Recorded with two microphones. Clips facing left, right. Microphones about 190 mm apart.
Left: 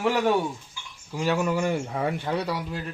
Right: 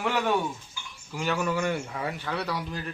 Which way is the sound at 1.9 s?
30° left (ahead or behind).